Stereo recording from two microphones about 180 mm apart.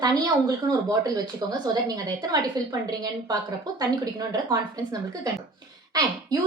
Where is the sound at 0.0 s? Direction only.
20° right (ahead or behind).